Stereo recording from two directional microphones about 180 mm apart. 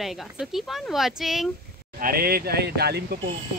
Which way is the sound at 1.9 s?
55° right (ahead or behind).